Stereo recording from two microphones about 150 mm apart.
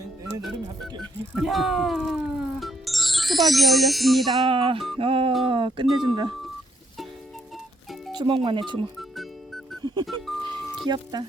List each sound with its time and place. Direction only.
1.4 s speech: centre (ahead or behind)
4.4 s speech: 35° right (ahead or behind)
8.1 s speech: 35° right (ahead or behind)
10.1 s music: centre (ahead or behind)
10.8 s speech: 30° right (ahead or behind)